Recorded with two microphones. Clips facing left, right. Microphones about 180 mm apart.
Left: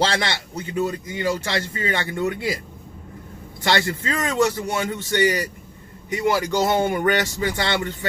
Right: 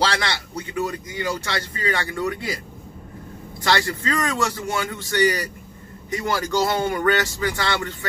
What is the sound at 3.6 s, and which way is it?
A man's voice, 20° left (ahead or behind).